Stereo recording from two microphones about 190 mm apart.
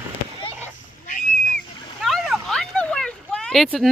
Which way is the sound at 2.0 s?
Centre (ahead or behind).